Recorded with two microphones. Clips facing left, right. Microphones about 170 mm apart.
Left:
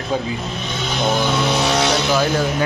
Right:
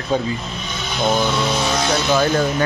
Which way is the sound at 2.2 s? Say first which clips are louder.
Right 1 dB; 10° left (ahead or behind).